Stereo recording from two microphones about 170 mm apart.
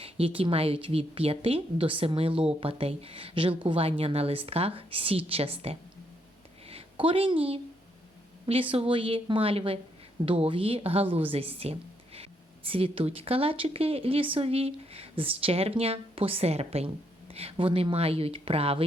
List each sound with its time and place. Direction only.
0.0 s a woman's voice: 35° right (ahead or behind)